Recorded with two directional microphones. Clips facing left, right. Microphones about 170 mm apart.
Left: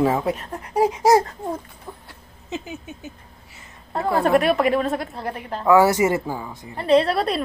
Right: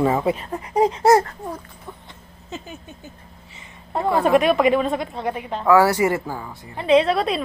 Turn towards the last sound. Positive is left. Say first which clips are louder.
# right 1 dB
turn(degrees=0)  # may be behind; listen again after turning